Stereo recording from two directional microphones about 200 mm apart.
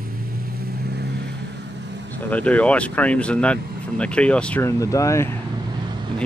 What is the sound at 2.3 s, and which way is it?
Speech, 5° left (ahead or behind).